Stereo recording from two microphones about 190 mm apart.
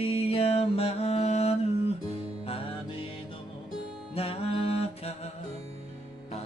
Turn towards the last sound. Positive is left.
turn(degrees=30)  # may be behind; listen again after turning